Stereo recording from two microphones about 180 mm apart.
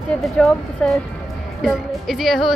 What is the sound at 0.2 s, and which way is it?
A woman's voice, centre (ahead or behind).